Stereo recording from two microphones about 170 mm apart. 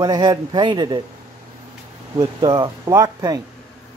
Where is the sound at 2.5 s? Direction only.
20° right (ahead or behind).